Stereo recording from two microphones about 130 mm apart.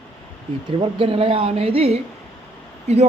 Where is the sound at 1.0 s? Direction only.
45° right (ahead or behind).